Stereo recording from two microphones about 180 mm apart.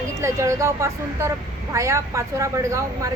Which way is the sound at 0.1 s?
15° right (ahead or behind).